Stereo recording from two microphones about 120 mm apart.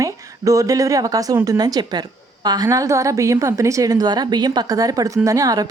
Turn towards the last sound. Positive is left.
turn(degrees=-30)  # may be behind; listen again after turning